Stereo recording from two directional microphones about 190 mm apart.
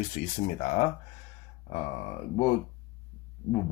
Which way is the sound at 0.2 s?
40° left (ahead or behind).